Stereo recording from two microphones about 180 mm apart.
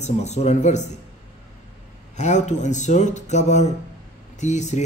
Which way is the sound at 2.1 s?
40° left (ahead or behind).